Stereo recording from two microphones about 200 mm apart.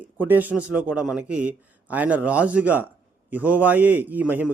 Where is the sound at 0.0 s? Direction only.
10° right (ahead or behind).